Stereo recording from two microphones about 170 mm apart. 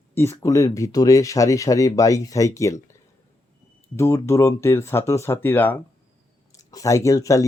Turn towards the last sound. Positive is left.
turn(degrees=20)  # may be behind; listen again after turning